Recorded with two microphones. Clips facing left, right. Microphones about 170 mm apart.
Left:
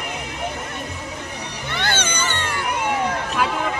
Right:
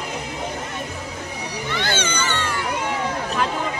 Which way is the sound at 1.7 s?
55° left (ahead or behind).